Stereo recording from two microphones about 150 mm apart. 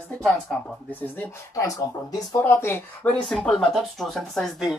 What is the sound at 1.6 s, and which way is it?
Speech, 20° left (ahead or behind).